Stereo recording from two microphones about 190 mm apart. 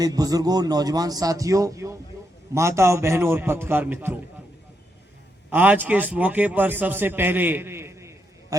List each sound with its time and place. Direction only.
0.0 s a man's voice: 20° right (ahead or behind)
5.5 s a man's voice: 10° right (ahead or behind)